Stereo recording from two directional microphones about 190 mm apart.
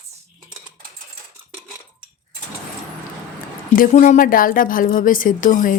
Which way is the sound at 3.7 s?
45° left (ahead or behind).